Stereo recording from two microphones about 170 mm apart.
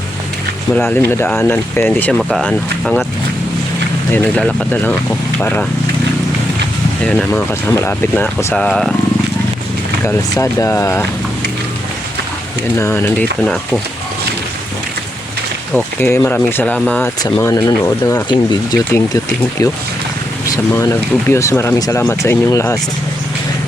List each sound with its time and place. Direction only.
0.9 s speech: 15° left (ahead or behind)
4.1 s speech: 10° left (ahead or behind)
7.3 s speech: 15° left (ahead or behind)
8.5 s speech: 5° left (ahead or behind)
10.0 s speech: 15° left (ahead or behind)
12.7 s speech: 15° left (ahead or behind)
15.7 s speech: 10° left (ahead or behind)